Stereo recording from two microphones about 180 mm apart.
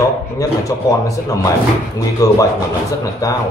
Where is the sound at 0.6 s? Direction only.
20° left (ahead or behind).